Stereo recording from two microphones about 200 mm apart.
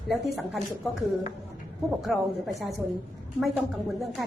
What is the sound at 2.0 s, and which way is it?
Speech, centre (ahead or behind).